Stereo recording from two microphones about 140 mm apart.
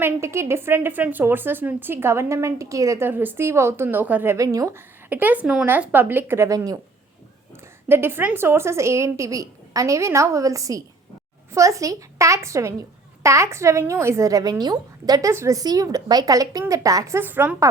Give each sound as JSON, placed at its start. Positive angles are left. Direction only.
{"t": 0.0, "sound": "a woman's voice", "side_deg": -20}
{"t": 7.9, "sound": "a woman's voice", "side_deg": -15}